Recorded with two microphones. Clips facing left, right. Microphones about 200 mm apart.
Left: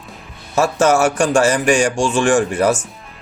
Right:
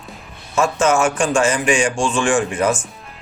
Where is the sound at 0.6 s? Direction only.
40° left (ahead or behind).